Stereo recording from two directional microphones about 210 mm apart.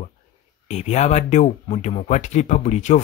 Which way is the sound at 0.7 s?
30° left (ahead or behind).